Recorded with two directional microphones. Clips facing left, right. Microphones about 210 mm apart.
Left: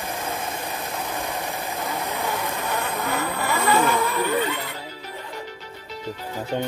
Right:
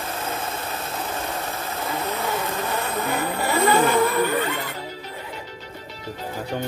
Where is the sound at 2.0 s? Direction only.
15° left (ahead or behind).